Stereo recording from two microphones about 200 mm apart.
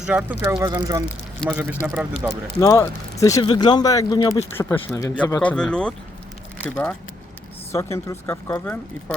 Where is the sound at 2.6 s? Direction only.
15° left (ahead or behind).